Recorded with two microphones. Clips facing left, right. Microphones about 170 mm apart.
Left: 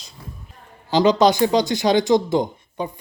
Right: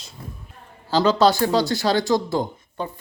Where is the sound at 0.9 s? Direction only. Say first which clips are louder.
Left 2 dB; 15° left (ahead or behind).